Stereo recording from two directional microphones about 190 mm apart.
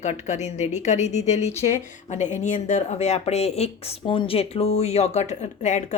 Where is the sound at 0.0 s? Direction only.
35° left (ahead or behind).